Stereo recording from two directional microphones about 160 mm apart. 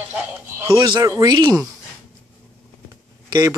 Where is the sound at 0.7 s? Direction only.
30° right (ahead or behind).